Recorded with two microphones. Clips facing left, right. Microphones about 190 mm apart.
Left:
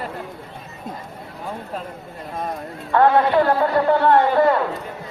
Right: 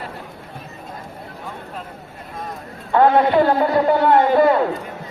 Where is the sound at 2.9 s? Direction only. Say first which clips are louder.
Right 1 dB; 20° right (ahead or behind).